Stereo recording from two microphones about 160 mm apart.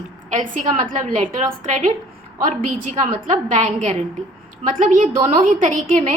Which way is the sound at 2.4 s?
50° right (ahead or behind).